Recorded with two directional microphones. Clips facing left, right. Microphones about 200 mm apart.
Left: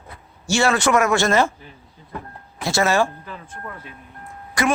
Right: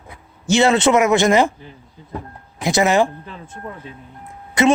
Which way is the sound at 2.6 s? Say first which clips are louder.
Right 3 dB; 15° right (ahead or behind).